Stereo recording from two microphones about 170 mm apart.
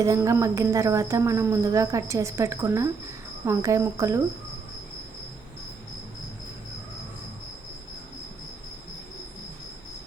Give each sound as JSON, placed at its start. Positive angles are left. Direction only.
{"t": 0.0, "sound": "a woman's voice", "side_deg": -20}